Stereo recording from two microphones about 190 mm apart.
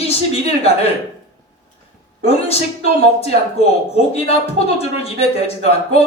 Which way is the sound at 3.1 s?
30° left (ahead or behind).